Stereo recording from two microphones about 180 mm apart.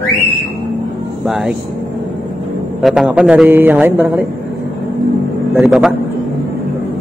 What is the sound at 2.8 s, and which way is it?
A man's voice, 5° right (ahead or behind).